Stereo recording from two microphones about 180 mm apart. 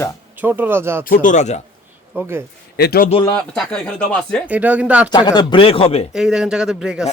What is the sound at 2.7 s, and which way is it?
Speech, 60° left (ahead or behind).